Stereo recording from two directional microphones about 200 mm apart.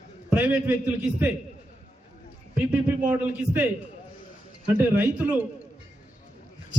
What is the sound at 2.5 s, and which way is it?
A man's voice, 5° right (ahead or behind).